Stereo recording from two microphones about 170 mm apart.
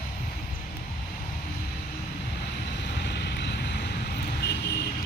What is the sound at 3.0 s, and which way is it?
Vehicle, 80° left.